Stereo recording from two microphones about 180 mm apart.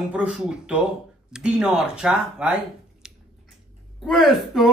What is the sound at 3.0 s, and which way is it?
Chewing, 5° right (ahead or behind).